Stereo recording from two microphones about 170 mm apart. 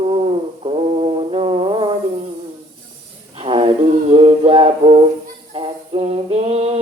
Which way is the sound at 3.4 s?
30° right (ahead or behind).